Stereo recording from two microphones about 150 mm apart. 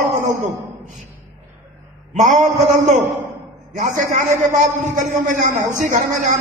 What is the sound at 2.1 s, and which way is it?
A man's voice, 55° right (ahead or behind).